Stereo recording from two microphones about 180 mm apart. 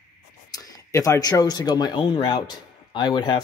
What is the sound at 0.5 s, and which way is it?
Speech, 20° left (ahead or behind).